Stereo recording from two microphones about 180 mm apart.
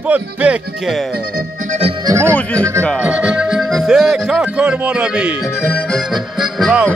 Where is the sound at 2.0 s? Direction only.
15° right (ahead or behind).